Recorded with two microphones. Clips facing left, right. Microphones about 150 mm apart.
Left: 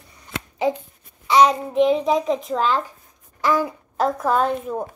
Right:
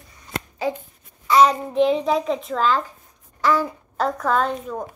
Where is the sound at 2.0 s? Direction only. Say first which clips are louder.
Left 1 dB; 15° left (ahead or behind).